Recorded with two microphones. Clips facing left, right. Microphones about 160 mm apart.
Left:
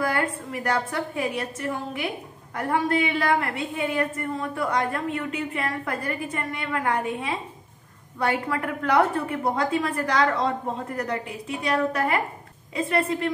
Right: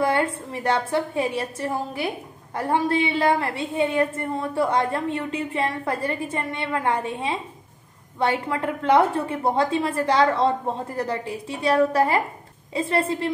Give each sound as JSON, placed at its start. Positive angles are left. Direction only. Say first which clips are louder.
{"t": 0.0, "sound": "a woman's voice", "louder": "right 4 dB", "side_deg": -25}